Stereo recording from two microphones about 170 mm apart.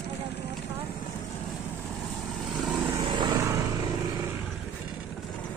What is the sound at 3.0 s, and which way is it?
Vehicle, 25° right (ahead or behind).